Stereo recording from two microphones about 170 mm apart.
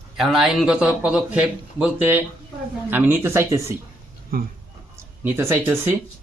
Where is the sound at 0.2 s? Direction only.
Centre (ahead or behind).